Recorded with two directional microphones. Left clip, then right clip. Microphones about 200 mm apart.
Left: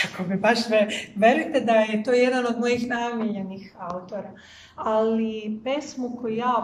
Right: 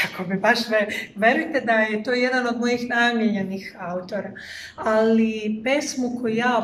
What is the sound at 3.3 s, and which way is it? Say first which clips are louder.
Speech: right 6 dB; 35° right (ahead or behind).